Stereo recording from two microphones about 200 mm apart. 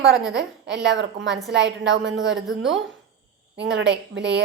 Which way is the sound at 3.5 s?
65° right (ahead or behind).